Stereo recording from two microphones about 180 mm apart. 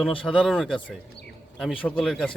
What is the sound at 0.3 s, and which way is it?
A man's voice, centre (ahead or behind).